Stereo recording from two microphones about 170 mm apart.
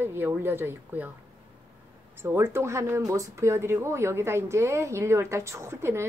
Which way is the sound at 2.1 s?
15° right (ahead or behind).